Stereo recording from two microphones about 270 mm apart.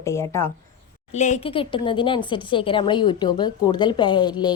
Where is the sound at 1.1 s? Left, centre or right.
Left.